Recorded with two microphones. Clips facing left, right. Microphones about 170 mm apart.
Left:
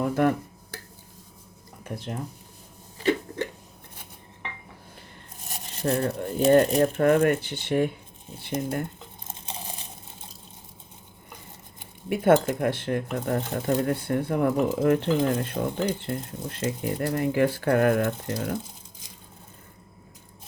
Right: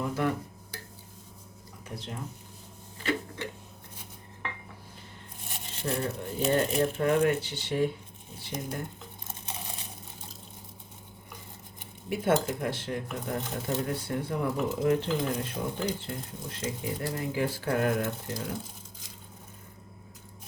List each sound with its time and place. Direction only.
0.0 s a sound: 55° left (ahead or behind)
1.8 s speech: 50° left (ahead or behind)
5.5 s a sound: 40° left (ahead or behind)
6.1 s speech: 40° left (ahead or behind)
6.6 s speech: 50° left (ahead or behind)
12.0 s speech: 55° left (ahead or behind)